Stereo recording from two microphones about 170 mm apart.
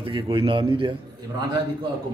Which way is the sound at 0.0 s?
30° right (ahead or behind).